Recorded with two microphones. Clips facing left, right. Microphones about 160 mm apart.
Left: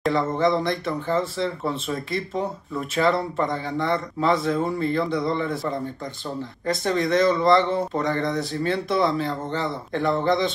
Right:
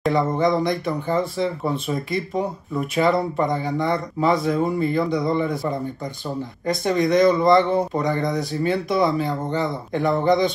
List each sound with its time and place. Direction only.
0.3 s speech: 15° right (ahead or behind); by 5.8 s centre (ahead or behind)
6.6 s speech: 10° right (ahead or behind)